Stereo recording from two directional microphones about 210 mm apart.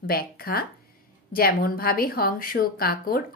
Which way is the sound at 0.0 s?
45° left (ahead or behind).